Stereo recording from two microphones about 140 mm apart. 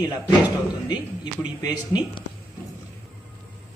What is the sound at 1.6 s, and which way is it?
Speech, 30° left (ahead or behind).